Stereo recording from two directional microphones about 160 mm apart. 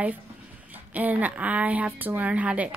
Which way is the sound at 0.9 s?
10° right (ahead or behind).